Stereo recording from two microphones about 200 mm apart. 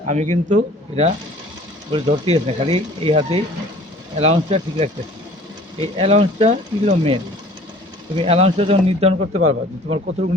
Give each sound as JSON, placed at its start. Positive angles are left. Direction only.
{"t": 0.1, "sound": "speech", "side_deg": -35}